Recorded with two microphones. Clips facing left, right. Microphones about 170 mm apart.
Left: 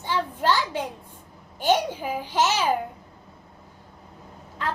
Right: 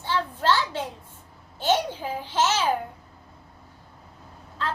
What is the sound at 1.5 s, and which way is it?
A child's voice, 15° left (ahead or behind).